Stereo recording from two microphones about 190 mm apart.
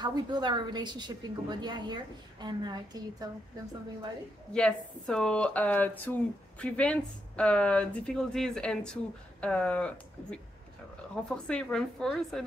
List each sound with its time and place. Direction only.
0.0 s a woman's voice: 20° right (ahead or behind)
4.5 s speech: 5° left (ahead or behind)